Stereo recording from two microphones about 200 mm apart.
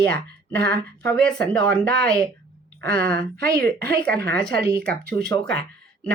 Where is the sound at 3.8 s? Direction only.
50° right (ahead or behind).